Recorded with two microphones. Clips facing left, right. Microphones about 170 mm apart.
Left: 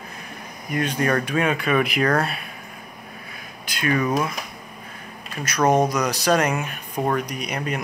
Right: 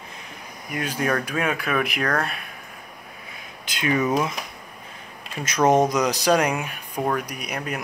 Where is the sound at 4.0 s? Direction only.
5° right (ahead or behind).